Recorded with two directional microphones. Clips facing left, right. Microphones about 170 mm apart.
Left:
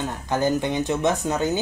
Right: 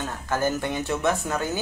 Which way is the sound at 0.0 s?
15° left (ahead or behind).